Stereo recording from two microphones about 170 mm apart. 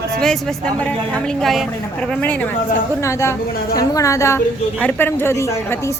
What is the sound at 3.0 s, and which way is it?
A woman's voice, 15° left (ahead or behind).